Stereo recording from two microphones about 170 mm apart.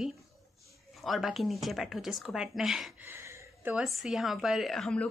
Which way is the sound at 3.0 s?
15° right (ahead or behind).